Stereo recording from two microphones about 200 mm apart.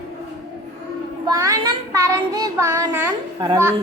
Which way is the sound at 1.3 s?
15° right (ahead or behind).